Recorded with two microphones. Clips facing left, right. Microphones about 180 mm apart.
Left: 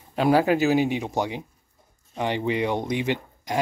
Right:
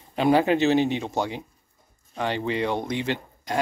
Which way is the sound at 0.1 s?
5° left (ahead or behind).